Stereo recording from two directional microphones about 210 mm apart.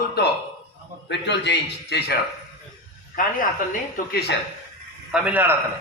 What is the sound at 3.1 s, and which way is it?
A man's voice, 40° left (ahead or behind).